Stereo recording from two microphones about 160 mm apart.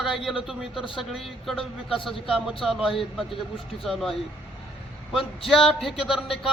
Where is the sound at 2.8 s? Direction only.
35° left (ahead or behind).